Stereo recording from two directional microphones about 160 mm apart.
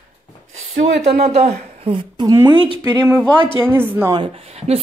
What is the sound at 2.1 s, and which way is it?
A woman's voice, 20° right (ahead or behind).